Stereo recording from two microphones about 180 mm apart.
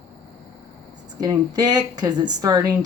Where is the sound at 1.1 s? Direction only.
20° right (ahead or behind).